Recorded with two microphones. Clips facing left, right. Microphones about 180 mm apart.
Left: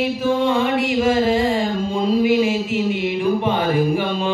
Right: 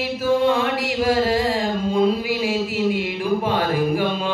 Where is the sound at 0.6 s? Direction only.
Centre (ahead or behind).